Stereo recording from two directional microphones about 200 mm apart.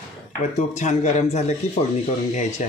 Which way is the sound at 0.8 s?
35° left (ahead or behind).